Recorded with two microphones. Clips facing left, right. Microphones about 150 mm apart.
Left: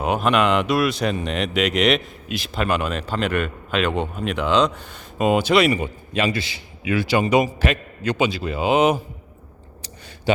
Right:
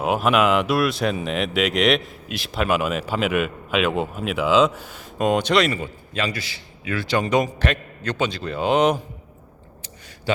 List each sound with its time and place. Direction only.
0.0 s speech: 5° right (ahead or behind)
10.3 s speech: 15° left (ahead or behind)